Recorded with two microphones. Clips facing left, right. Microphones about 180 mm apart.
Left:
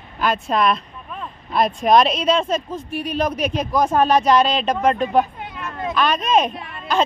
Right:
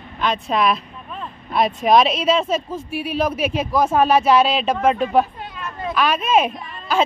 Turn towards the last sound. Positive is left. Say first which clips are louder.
# left 1 dB
turn(degrees=65)  # may be behind; listen again after turning